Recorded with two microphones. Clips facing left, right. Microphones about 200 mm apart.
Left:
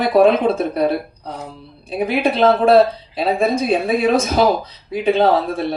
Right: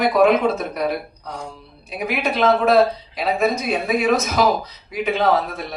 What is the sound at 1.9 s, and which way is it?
Speech, 30° left (ahead or behind).